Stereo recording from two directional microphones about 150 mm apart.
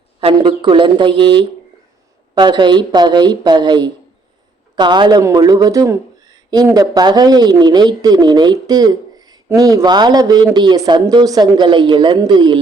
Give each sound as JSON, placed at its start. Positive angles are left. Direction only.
{"t": 0.2, "sound": "a woman's voice", "side_deg": -35}